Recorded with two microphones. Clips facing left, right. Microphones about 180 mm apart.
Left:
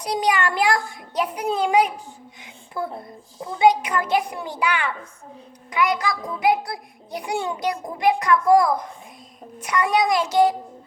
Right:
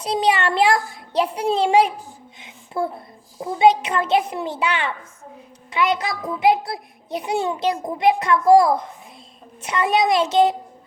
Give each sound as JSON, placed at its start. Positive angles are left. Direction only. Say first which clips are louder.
{"t": 0.0, "sound": "a child's voice", "louder": "right 2 dB", "side_deg": -25}